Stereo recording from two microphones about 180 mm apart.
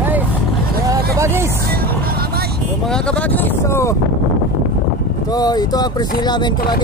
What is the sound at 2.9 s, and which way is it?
Speech, 5° left (ahead or behind).